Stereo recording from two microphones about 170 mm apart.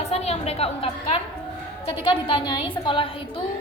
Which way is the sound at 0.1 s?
35° left (ahead or behind).